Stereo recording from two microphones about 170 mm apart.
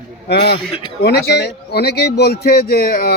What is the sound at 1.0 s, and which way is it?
A man's voice, 75° left (ahead or behind).